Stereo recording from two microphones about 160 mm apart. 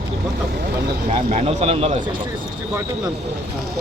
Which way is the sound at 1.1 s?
40° right (ahead or behind).